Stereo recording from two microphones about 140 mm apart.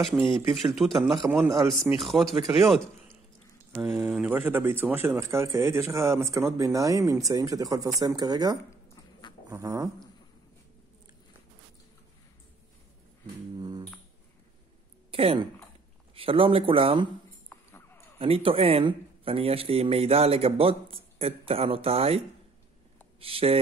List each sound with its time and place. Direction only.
0.6 s speech: centre (ahead or behind)
4.1 s a man's voice: 10° right (ahead or behind); by 9.8 s 25° right (ahead or behind)
13.6 s music: 30° right (ahead or behind)
15.0 s a sound: 45° right (ahead or behind)
16.2 s speech: 40° right (ahead or behind)
17.5 s dog: 15° left (ahead or behind)
18.2 s a man's voice: 45° right (ahead or behind)
23.2 s a man's voice: 40° right (ahead or behind)